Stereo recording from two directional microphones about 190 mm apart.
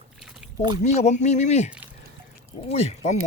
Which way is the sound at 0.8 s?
35° left (ahead or behind).